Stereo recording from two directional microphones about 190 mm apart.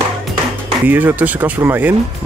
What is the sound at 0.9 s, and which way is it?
Speech, 10° right (ahead or behind).